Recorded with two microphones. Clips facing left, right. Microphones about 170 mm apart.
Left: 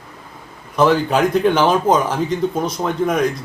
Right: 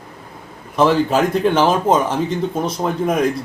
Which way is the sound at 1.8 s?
30° right (ahead or behind).